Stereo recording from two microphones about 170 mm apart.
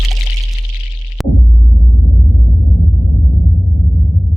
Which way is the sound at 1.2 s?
Centre (ahead or behind).